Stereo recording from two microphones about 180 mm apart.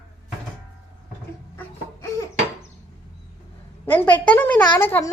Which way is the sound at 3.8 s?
10° left (ahead or behind).